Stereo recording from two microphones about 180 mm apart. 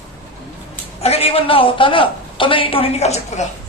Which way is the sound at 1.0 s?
35° left (ahead or behind).